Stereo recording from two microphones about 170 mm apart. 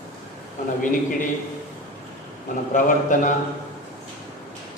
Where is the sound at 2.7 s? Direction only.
50° left (ahead or behind).